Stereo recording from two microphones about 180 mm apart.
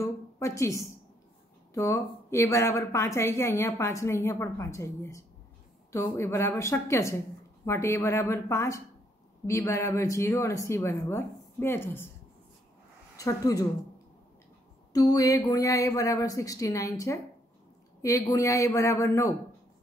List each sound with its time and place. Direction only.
0.0 s a woman's voice: 15° left (ahead or behind)
13.1 s speech: 20° left (ahead or behind)
14.9 s a woman's voice: 20° left (ahead or behind)